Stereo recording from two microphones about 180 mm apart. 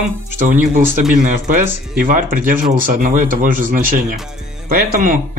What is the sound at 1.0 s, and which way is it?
Speech, 45° right (ahead or behind).